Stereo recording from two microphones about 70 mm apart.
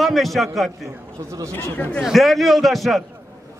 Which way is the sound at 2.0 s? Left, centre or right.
Centre.